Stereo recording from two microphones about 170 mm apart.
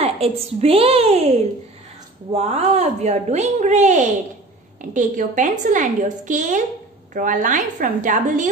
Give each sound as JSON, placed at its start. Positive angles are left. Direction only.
{"t": 0.0, "sound": "a woman's voice", "side_deg": -35}